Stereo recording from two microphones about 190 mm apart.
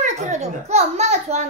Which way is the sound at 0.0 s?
35° right (ahead or behind).